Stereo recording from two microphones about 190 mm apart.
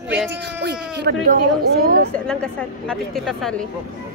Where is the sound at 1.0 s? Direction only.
60° right (ahead or behind).